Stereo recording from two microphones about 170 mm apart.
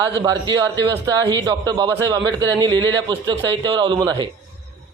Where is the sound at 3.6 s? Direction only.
30° right (ahead or behind).